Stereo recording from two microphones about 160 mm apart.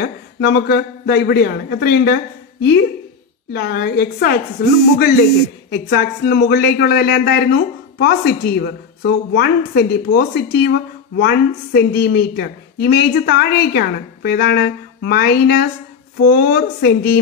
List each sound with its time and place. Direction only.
0.0 s a woman's voice: 90° left
3.5 s a woman's voice: 80° left
4.6 s speech: 75° left (ahead or behind)
5.7 s a woman's voice: 90° left